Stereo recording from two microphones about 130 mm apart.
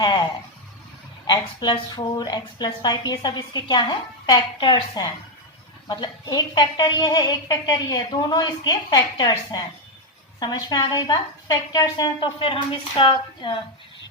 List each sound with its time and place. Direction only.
0.0 s a woman's voice: 35° left (ahead or behind)
1.3 s a woman's voice: 35° left (ahead or behind)